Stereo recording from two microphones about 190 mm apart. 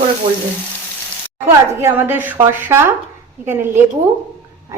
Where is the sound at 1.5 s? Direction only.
10° right (ahead or behind).